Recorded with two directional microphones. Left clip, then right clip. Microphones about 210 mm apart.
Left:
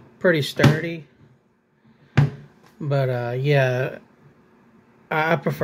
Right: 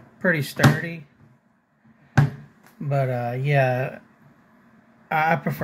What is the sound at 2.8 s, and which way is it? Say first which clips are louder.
Speech: left 1 dB; 15° left (ahead or behind).